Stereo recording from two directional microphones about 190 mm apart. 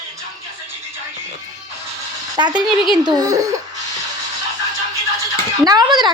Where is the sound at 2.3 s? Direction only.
25° right (ahead or behind).